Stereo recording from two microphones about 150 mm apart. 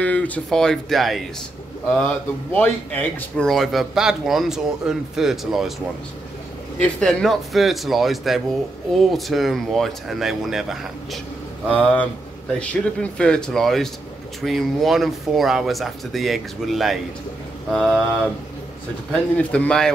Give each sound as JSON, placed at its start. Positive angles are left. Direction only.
{"t": 0.0, "sound": "speech", "side_deg": 10}
{"t": 6.8, "sound": "a man's voice", "side_deg": 5}
{"t": 19.3, "sound": "a man's voice", "side_deg": 10}